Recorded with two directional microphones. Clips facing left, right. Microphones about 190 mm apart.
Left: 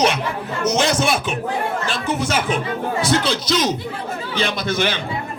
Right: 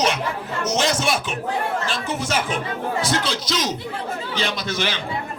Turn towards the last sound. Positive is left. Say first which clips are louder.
# left 4 dB
turn(degrees=55)  # may be behind; listen again after turning